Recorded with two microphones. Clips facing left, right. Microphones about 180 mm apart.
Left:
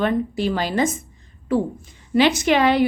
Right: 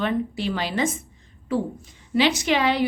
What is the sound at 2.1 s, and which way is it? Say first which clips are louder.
Speech: left 4 dB; 50° left (ahead or behind).